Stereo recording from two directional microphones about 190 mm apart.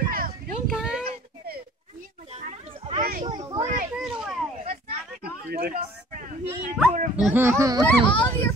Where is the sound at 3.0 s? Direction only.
50° right (ahead or behind).